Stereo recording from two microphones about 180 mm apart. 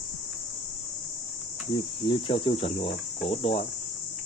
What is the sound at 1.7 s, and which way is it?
Speech, 30° left (ahead or behind).